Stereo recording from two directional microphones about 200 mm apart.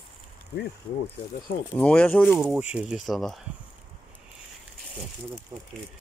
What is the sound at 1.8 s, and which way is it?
Speech, 5° left (ahead or behind).